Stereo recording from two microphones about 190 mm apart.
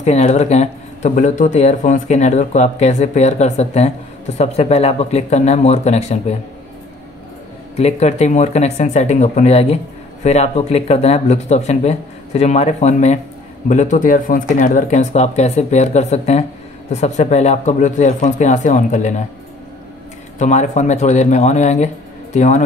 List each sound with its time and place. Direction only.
0.0 s a man's voice: 35° left (ahead or behind)
7.7 s a man's voice: 35° left (ahead or behind)
20.3 s a man's voice: 40° left (ahead or behind)